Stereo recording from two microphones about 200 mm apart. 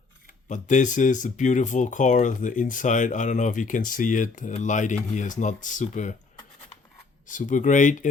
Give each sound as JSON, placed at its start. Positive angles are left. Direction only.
{"t": 0.4, "sound": "speech", "side_deg": 40}
{"t": 7.3, "sound": "speech", "side_deg": 40}